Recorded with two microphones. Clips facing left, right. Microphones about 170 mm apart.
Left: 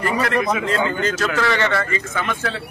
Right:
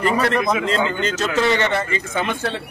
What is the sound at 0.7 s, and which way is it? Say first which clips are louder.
A man's voice: even; 20° right (ahead or behind).